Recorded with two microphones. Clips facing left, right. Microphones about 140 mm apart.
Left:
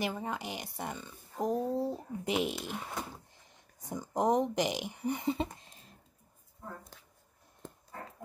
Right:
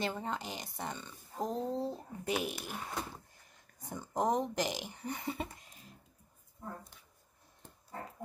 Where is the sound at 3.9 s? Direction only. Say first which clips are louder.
Left 3 dB; 15° left (ahead or behind).